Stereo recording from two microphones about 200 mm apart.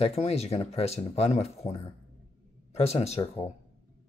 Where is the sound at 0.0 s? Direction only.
30° left (ahead or behind).